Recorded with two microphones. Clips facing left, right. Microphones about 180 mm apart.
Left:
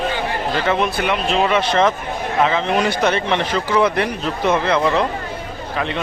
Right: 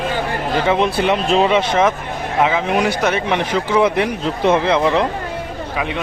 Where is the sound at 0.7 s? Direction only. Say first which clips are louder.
Right 4 dB; 20° right (ahead or behind).